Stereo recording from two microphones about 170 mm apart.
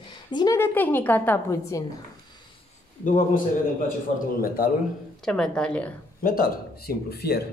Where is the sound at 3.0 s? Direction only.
50° left (ahead or behind).